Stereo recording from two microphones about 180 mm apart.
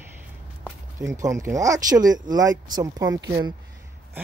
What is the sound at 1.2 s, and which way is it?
Speech, 20° right (ahead or behind).